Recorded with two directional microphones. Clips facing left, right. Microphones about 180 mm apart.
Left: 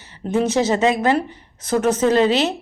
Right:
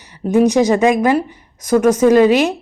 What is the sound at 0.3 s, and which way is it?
Speech, 15° right (ahead or behind).